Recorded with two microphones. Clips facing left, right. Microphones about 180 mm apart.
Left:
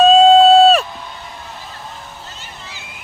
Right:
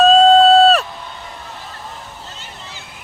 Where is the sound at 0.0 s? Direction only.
Centre (ahead or behind).